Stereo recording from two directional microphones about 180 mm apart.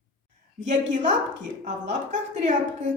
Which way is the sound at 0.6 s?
45° right (ahead or behind).